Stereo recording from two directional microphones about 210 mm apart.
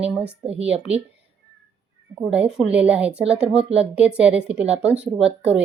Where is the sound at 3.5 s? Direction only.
30° right (ahead or behind).